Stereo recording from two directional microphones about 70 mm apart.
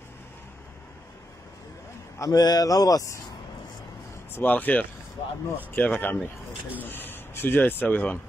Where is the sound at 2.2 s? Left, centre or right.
Left.